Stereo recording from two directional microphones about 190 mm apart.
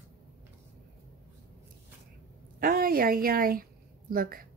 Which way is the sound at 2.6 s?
50° right (ahead or behind).